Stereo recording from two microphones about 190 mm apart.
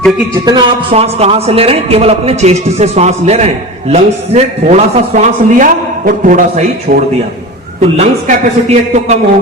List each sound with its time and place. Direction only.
0.4 s a man's voice: 25° right (ahead or behind)